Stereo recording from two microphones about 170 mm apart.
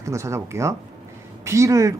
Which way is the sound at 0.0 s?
15° right (ahead or behind).